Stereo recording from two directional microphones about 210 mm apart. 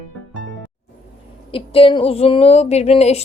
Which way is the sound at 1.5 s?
25° left (ahead or behind).